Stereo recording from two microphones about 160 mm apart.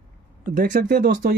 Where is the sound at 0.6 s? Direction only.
70° right (ahead or behind).